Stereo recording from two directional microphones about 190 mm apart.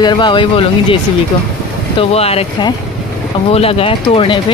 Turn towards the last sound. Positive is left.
turn(degrees=30)  # may be behind; listen again after turning